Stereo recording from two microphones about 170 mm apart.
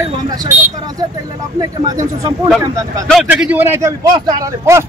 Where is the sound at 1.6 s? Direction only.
20° right (ahead or behind).